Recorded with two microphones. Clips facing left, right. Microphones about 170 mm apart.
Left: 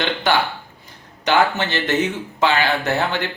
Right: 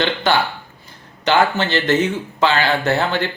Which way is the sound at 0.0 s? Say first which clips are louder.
Right 2 dB; 15° left (ahead or behind).